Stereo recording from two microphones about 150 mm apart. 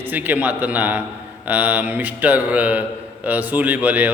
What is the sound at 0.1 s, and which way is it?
A man's voice, 10° right (ahead or behind).